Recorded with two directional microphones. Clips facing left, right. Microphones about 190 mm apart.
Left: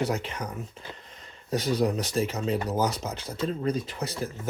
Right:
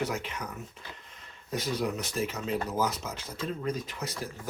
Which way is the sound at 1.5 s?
35° left (ahead or behind).